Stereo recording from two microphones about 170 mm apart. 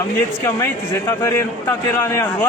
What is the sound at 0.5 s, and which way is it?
Speech, 15° left (ahead or behind).